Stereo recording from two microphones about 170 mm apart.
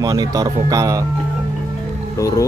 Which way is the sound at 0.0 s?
20° right (ahead or behind).